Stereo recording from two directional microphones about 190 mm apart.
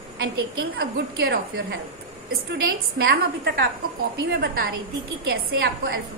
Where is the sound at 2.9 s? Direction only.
55° right (ahead or behind).